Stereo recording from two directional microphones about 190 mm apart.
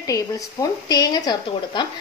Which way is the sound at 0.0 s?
20° left (ahead or behind).